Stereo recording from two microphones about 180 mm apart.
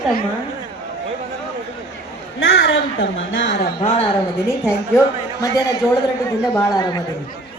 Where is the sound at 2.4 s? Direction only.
85° left.